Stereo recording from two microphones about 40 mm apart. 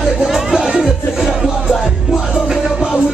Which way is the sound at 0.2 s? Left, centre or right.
Centre.